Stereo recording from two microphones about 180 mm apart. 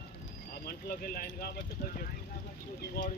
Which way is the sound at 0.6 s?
55° left (ahead or behind).